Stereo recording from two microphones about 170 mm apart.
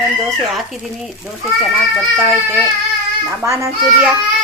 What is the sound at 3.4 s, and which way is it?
Speech, 15° right (ahead or behind).